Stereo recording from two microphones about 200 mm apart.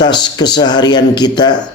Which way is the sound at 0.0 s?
20° left (ahead or behind).